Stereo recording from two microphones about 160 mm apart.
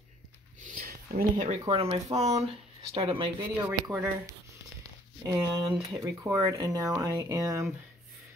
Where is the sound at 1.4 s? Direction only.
40° right (ahead or behind).